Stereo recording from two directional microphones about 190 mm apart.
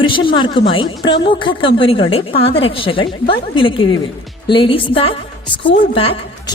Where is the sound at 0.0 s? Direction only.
25° left (ahead or behind).